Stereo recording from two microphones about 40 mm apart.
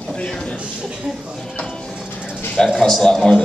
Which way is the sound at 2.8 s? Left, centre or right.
Centre.